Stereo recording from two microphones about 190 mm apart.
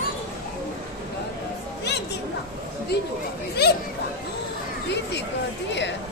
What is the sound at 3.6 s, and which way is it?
Chatter, 55° left (ahead or behind).